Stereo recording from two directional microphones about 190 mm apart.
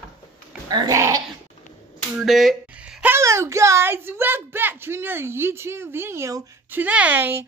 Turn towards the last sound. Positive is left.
turn(degrees=-10)  # may be behind; listen again after turning